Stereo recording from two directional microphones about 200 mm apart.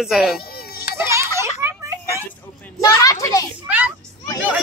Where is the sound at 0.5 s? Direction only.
50° left (ahead or behind).